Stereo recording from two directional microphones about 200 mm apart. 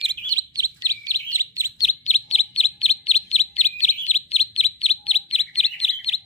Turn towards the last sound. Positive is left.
turn(degrees=30)  # may be behind; listen again after turning